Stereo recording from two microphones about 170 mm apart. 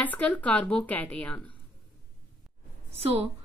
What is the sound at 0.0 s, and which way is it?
Speech, 10° left (ahead or behind).